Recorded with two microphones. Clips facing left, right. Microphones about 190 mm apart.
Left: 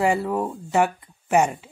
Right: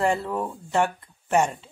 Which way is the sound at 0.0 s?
10° left (ahead or behind).